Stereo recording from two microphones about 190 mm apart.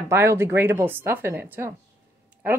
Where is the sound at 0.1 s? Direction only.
15° right (ahead or behind).